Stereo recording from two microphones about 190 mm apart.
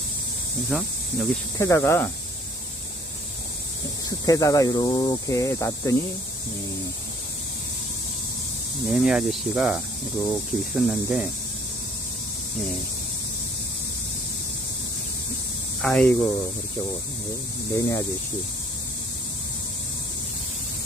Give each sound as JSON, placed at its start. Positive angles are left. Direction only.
{"t": 0.7, "sound": "speech", "side_deg": 0}
{"t": 1.5, "sound": "speech", "side_deg": 15}
{"t": 4.3, "sound": "speech", "side_deg": 20}
{"t": 8.9, "sound": "speech", "side_deg": 0}
{"t": 10.2, "sound": "speech", "side_deg": 15}
{"t": 10.8, "sound": "speech", "side_deg": 0}
{"t": 15.8, "sound": "speech", "side_deg": 5}
{"t": 17.7, "sound": "speech", "side_deg": 15}